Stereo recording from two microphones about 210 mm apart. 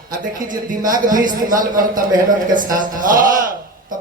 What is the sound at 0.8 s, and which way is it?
Speech, 40° right (ahead or behind).